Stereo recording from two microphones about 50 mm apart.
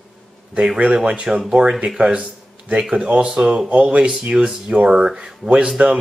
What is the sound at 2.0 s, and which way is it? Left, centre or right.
Speech, right.